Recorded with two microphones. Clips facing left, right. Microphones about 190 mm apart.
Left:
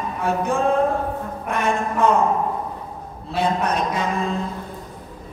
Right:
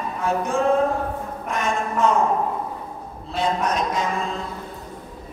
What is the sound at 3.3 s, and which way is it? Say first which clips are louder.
Speech: left 1 dB; 60° left (ahead or behind).